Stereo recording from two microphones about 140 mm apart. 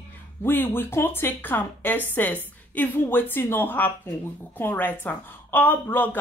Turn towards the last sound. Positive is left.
turn(degrees=15)  # may be behind; listen again after turning